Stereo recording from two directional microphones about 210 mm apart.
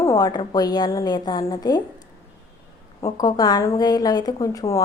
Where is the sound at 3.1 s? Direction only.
20° left (ahead or behind).